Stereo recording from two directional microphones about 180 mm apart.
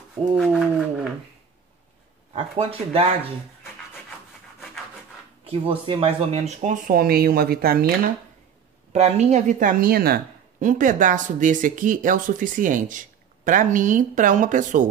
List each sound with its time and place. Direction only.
0.4 s a sound: centre (ahead or behind)
2.3 s speech: 30° right (ahead or behind)
5.4 s speech: 30° right (ahead or behind); by 7.8 s 55° right (ahead or behind)
8.9 s speech: 35° right (ahead or behind)